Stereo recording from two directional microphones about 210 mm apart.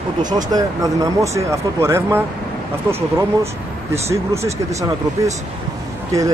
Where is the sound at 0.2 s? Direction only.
20° right (ahead or behind).